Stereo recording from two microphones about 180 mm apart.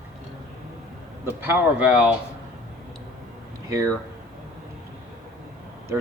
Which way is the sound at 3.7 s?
15° right (ahead or behind).